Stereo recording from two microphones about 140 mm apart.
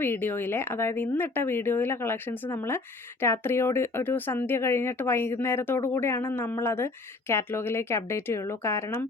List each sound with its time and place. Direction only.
0.0 s speech: 15° left (ahead or behind)